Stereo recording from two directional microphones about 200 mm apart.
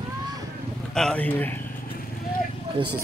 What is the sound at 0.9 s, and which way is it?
Speech, 5° left (ahead or behind).